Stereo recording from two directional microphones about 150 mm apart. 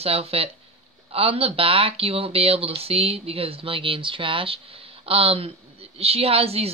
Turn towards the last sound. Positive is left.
turn(degrees=-40)  # may be behind; listen again after turning